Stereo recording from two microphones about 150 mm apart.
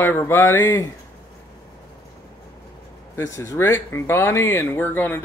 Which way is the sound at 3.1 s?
20° left (ahead or behind).